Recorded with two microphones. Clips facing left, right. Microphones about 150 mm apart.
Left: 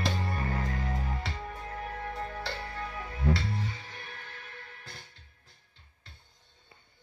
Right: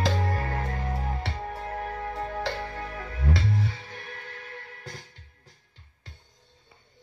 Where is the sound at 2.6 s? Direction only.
90° right.